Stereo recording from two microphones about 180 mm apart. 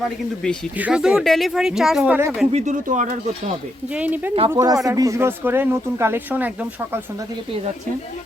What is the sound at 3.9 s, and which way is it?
Speech, 10° right (ahead or behind).